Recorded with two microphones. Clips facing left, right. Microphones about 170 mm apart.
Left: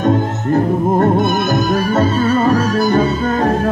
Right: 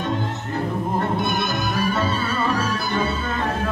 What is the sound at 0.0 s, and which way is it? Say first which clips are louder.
Music: left 10 dB; 45° left (ahead or behind).